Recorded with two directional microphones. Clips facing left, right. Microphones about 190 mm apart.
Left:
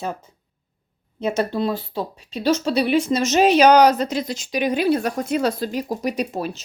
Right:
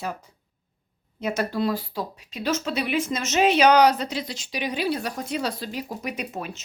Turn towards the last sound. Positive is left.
turn(degrees=35)  # may be behind; listen again after turning